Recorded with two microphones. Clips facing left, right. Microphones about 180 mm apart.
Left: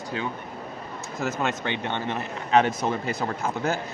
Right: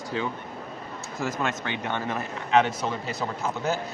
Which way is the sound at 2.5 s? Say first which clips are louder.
Left 1 dB; 50° left (ahead or behind).